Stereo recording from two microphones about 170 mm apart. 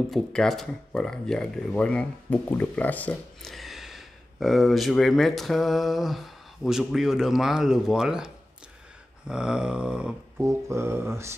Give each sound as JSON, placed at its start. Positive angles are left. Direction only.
{"t": 0.1, "sound": "speech", "side_deg": 0}
{"t": 9.3, "sound": "speech", "side_deg": -5}
{"t": 10.4, "sound": "mantra", "side_deg": -15}